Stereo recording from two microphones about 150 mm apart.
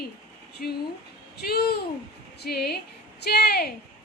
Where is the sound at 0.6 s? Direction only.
70° left (ahead or behind).